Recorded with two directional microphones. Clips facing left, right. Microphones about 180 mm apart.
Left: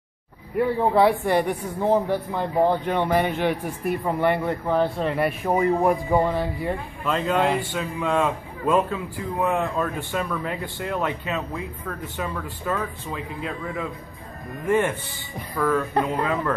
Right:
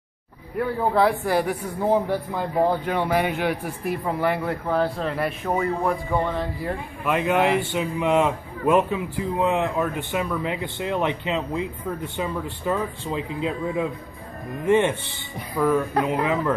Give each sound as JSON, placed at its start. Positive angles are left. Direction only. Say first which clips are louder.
{"t": 0.6, "sound": "a man's voice", "louder": "left 2 dB", "side_deg": 0}
{"t": 6.4, "sound": "a man's voice", "louder": "left 2 dB", "side_deg": 0}
{"t": 7.1, "sound": "a man's voice", "louder": "right 1 dB", "side_deg": -15}
{"t": 15.5, "sound": "speech", "louder": "right 1 dB", "side_deg": -10}